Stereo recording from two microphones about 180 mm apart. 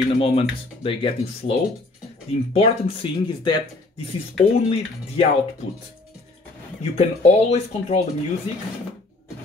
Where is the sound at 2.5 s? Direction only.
30° left (ahead or behind).